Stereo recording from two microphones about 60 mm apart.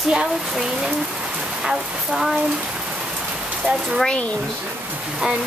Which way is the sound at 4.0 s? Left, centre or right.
Centre.